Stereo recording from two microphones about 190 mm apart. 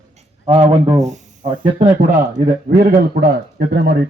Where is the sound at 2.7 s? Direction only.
50° right (ahead or behind).